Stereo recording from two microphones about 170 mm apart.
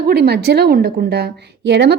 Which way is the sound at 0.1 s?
70° right (ahead or behind).